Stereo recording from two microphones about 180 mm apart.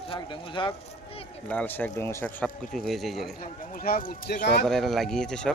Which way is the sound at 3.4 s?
55° left (ahead or behind).